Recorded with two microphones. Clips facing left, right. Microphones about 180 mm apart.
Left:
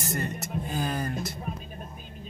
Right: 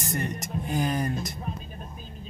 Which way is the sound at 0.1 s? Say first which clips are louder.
Right 1 dB; 15° right (ahead or behind).